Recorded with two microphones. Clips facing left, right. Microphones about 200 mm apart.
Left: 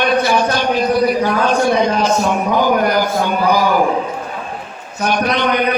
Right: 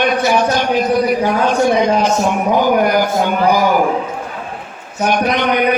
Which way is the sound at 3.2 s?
15° right (ahead or behind).